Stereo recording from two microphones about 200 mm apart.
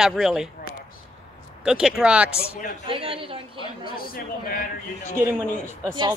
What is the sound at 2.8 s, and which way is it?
Speech, 25° right (ahead or behind).